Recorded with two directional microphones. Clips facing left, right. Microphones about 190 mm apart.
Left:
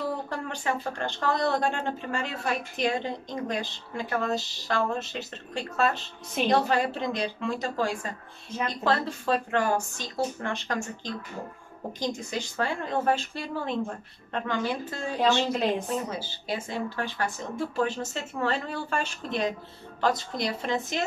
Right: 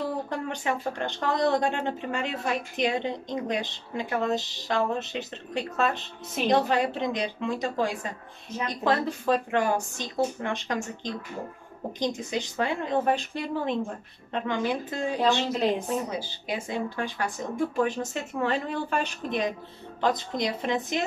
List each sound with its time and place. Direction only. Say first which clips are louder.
0.3 s speech: right 1 dB; 15° right (ahead or behind)